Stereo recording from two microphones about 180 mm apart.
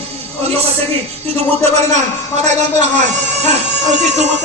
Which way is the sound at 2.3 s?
40° right (ahead or behind).